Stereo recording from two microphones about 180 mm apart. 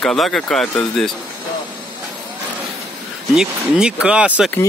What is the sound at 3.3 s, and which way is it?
Speech, 5° right (ahead or behind).